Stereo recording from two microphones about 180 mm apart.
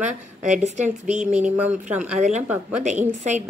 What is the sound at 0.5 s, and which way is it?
A woman's voice, 40° right (ahead or behind).